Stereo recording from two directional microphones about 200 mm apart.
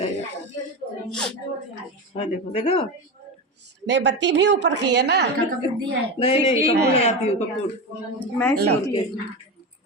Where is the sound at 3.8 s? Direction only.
60° right (ahead or behind).